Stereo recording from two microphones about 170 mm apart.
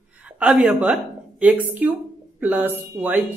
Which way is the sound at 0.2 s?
5° right (ahead or behind).